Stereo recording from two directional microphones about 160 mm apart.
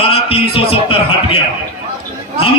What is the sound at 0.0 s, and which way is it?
A man's voice, 35° left (ahead or behind).